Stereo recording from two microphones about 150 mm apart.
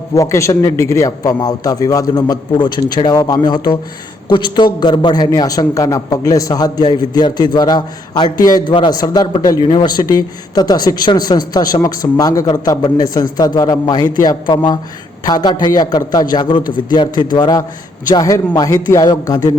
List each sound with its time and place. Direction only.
0.1 s a man's voice: 20° left (ahead or behind)